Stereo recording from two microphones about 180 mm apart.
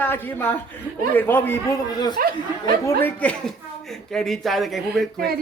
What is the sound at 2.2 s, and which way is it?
Speech, 50° right (ahead or behind).